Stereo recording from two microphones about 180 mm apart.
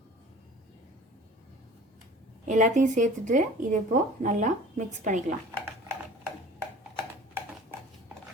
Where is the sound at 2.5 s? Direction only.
45° right (ahead or behind).